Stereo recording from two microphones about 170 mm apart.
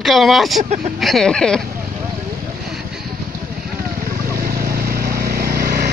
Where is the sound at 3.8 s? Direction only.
60° right (ahead or behind).